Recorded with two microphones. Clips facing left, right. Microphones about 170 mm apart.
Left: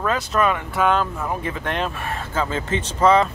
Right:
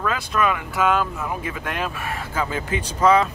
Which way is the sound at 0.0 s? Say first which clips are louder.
Left 2 dB; 35° left (ahead or behind).